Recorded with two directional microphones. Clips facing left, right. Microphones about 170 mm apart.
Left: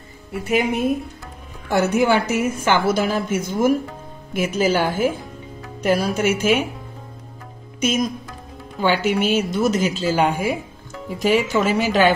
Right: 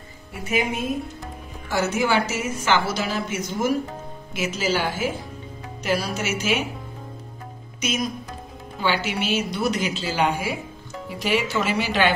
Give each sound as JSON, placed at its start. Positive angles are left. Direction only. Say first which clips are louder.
{"t": 0.3, "sound": "a woman's voice", "louder": "left 5 dB", "side_deg": 65}
{"t": 1.7, "sound": "a woman's voice", "louder": "left 5 dB", "side_deg": 55}
{"t": 7.8, "sound": "a woman's voice", "louder": "left 5 dB", "side_deg": 50}